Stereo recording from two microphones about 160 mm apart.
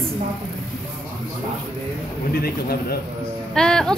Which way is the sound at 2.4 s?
75° left (ahead or behind).